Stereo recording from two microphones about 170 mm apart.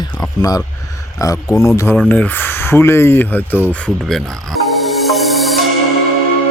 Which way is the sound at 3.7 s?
5° left (ahead or behind).